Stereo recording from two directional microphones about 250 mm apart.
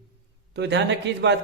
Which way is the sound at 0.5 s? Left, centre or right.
Right.